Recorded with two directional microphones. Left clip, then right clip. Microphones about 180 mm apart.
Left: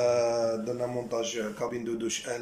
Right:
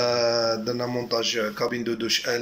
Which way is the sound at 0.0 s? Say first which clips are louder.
Right 3 dB; 10° left (ahead or behind).